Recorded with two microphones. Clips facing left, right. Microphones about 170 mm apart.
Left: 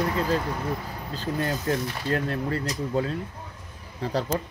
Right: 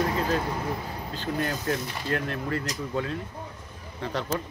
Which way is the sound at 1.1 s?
30° left (ahead or behind).